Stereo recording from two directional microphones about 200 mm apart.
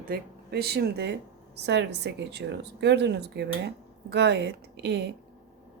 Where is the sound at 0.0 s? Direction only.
50° right (ahead or behind).